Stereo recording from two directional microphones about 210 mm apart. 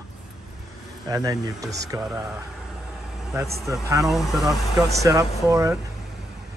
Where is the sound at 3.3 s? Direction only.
15° right (ahead or behind).